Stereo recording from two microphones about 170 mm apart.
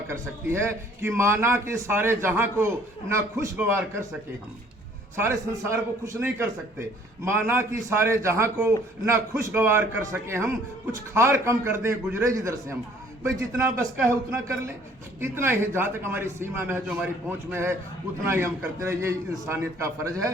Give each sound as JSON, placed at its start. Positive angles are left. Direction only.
{"t": 0.1, "sound": "a man's voice", "side_deg": -15}
{"t": 5.1, "sound": "a man's voice", "side_deg": -15}